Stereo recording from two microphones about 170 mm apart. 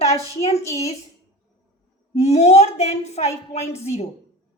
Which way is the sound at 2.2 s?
40° left (ahead or behind).